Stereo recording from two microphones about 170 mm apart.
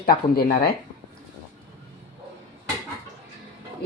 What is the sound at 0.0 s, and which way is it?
Speech, 60° left (ahead or behind).